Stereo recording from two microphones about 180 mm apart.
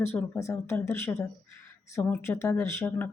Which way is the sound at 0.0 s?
10° left (ahead or behind).